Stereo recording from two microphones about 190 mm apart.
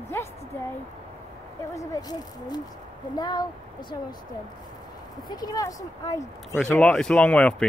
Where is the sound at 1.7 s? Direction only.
20° left (ahead or behind).